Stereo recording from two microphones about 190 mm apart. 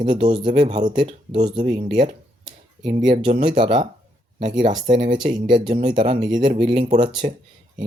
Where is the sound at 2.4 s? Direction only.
25° right (ahead or behind).